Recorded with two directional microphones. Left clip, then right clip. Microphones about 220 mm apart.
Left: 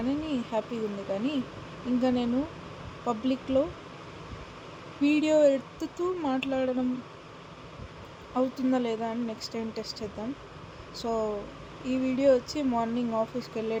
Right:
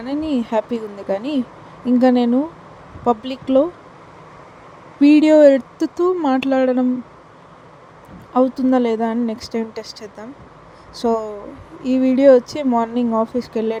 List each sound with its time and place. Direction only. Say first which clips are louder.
0.0 s speech: right 9 dB; 35° right (ahead or behind)
5.0 s speech: right 12 dB; 35° right (ahead or behind)
8.3 s speech: right 12 dB; 35° right (ahead or behind)